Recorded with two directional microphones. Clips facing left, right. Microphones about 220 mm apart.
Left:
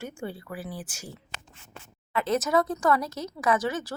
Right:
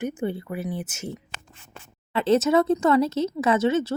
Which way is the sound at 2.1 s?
30° right (ahead or behind).